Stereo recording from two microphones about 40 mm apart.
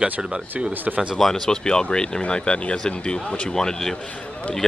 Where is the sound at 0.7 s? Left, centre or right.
Right.